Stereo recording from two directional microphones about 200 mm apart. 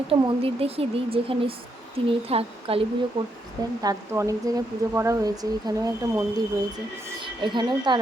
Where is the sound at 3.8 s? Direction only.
15° right (ahead or behind).